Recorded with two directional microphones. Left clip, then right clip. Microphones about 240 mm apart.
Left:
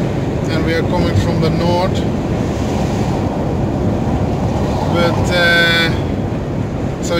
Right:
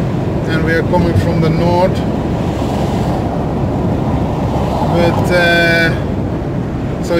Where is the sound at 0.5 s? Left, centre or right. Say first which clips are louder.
Right 3 dB; right.